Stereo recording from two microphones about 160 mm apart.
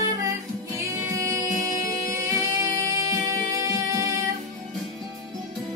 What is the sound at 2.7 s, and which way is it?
Music, 20° right (ahead or behind).